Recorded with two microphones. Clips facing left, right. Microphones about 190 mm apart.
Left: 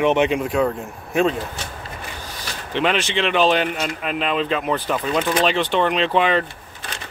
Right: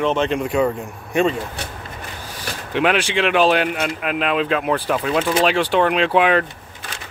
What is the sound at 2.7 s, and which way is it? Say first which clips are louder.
Speech: right 2 dB; 5° right (ahead or behind).